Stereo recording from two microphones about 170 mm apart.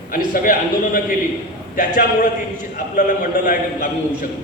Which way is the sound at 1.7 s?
55° left (ahead or behind).